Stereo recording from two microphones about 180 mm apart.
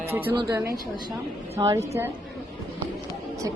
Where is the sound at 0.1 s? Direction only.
10° right (ahead or behind).